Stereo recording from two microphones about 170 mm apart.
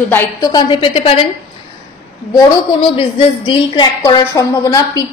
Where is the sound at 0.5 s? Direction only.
30° left (ahead or behind).